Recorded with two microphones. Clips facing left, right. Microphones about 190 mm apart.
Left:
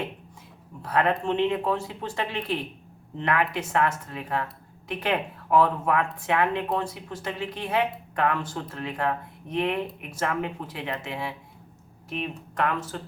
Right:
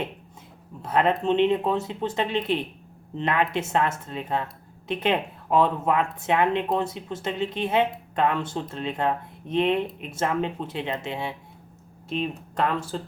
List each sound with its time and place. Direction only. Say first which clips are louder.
0.8 s speech: right 2 dB; 20° right (ahead or behind)